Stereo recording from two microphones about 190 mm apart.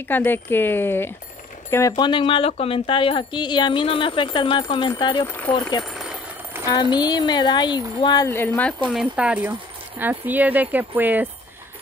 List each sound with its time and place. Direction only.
0.1 s speech: 10° left (ahead or behind)
8.9 s speech: 5° right (ahead or behind)